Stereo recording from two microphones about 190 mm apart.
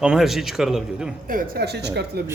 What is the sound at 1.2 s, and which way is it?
Speech, 50° right (ahead or behind).